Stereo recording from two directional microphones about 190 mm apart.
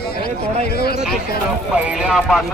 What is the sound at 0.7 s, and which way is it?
Speech, 55° left (ahead or behind).